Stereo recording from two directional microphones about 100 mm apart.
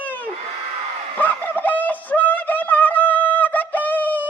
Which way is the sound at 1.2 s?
15° left (ahead or behind).